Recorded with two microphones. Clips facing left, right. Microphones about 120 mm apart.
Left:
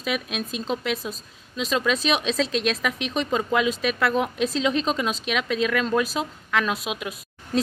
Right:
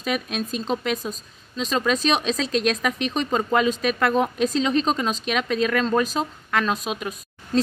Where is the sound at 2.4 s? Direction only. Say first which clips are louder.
Right 1 dB; centre (ahead or behind).